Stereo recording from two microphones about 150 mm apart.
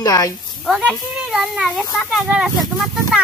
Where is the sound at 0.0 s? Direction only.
25° left (ahead or behind).